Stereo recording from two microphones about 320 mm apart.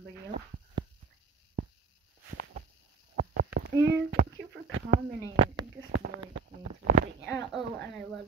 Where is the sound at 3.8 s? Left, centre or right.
Right.